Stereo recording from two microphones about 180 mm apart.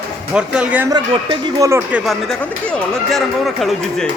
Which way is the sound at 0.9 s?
20° right (ahead or behind).